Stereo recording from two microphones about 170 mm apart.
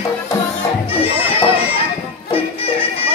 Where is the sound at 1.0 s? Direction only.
35° left (ahead or behind).